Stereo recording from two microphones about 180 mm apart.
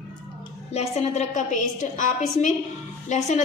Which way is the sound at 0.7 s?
35° left (ahead or behind).